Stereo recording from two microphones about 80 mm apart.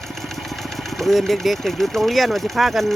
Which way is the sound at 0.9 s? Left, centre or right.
Centre.